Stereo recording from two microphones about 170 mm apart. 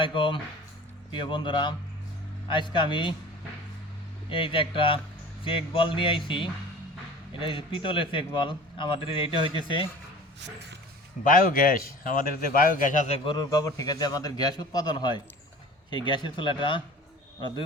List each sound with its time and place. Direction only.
0.0 s a man's voice: 30° left (ahead or behind)
4.3 s a man's voice: 30° left (ahead or behind)
11.2 s speech: 55° left (ahead or behind)
13.2 s a man's voice: 25° left (ahead or behind)